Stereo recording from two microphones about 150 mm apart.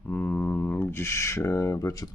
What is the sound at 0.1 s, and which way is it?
Speech, 15° left (ahead or behind).